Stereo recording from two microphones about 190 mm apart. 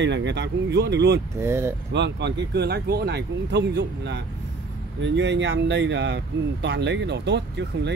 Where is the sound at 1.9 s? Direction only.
65° right (ahead or behind).